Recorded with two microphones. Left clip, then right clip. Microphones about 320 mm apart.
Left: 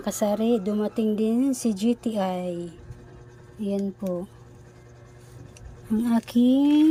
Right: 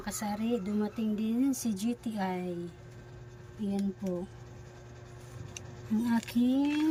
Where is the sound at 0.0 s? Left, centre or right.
Centre.